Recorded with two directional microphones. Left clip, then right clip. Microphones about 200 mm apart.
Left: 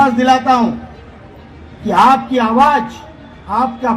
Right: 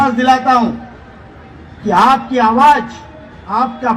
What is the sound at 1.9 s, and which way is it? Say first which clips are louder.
A man's voice: even; 25° right (ahead or behind).